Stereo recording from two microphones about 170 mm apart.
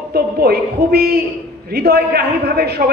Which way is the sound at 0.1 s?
65° right (ahead or behind).